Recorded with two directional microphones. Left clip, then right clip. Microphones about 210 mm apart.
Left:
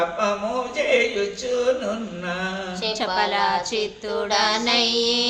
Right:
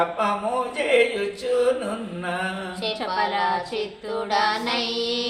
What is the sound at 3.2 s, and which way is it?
Speech, 50° left (ahead or behind).